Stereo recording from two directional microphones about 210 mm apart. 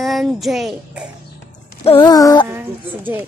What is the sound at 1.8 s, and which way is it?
Music, 25° left (ahead or behind).